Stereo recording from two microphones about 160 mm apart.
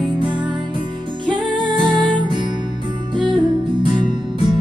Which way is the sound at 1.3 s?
30° right (ahead or behind).